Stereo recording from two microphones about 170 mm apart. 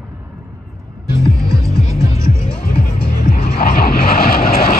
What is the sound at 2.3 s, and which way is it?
Music, 65° left (ahead or behind).